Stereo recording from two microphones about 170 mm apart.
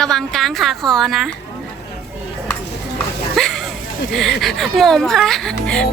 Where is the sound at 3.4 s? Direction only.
Centre (ahead or behind).